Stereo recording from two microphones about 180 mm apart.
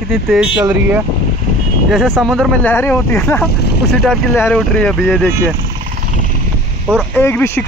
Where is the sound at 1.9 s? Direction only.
Centre (ahead or behind).